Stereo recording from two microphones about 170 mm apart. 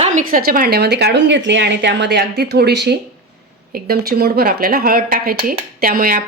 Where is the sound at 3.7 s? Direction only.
65° right (ahead or behind).